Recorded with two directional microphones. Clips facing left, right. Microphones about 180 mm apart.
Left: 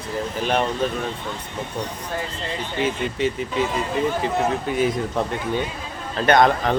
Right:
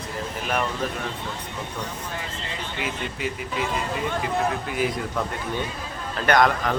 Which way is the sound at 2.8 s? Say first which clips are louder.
Left 8 dB; 30° left (ahead or behind).